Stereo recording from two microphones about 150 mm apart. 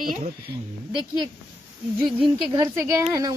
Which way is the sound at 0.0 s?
70° right (ahead or behind).